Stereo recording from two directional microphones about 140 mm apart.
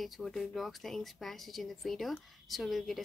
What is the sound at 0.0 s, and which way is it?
Speech, 5° left (ahead or behind).